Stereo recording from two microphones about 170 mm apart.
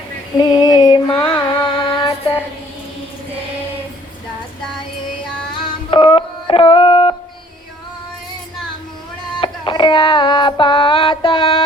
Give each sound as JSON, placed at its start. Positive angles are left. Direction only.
{"t": 0.3, "sound": "a sound", "side_deg": 25}
{"t": 1.2, "sound": "carnatic music", "side_deg": 30}
{"t": 5.9, "sound": "music", "side_deg": 30}
{"t": 9.4, "sound": "music", "side_deg": 30}